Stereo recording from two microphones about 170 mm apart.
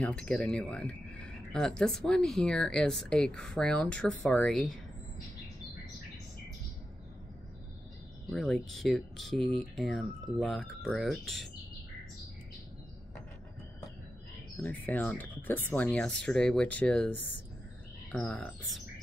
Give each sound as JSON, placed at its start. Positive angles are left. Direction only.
{"t": 0.0, "sound": "speech", "side_deg": 5}
{"t": 8.3, "sound": "speech", "side_deg": 0}
{"t": 14.6, "sound": "speech", "side_deg": 10}
{"t": 18.1, "sound": "speech", "side_deg": 10}